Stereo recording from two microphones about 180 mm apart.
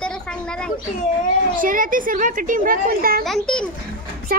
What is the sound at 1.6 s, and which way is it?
Speech, 50° right (ahead or behind).